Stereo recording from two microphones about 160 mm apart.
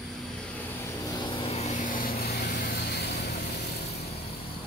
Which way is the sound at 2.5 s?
70° left (ahead or behind).